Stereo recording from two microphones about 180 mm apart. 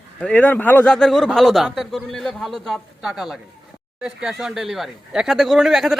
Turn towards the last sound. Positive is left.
turn(degrees=0)  # may be behind; listen again after turning